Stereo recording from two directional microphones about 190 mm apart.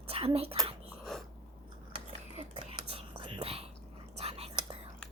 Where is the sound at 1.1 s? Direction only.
Centre (ahead or behind).